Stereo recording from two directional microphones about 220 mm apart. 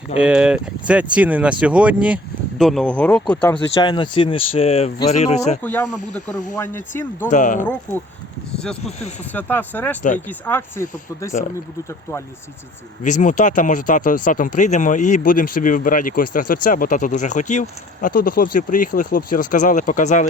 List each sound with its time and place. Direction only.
0.2 s speech: 5° right (ahead or behind)
3.5 s speech: 20° left (ahead or behind)
5.6 s speech: 5° left (ahead or behind)
7.3 s speech: 35° left (ahead or behind)
7.6 s speech: 10° left (ahead or behind)
8.5 s a sound: 5° left (ahead or behind)
9.3 s speech: 10° left (ahead or behind)
13.0 s speech: 35° left (ahead or behind)